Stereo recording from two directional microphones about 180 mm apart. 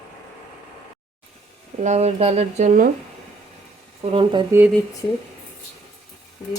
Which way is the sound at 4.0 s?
30° right (ahead or behind).